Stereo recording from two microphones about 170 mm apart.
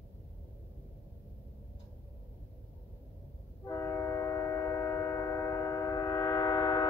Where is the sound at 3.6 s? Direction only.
20° left (ahead or behind).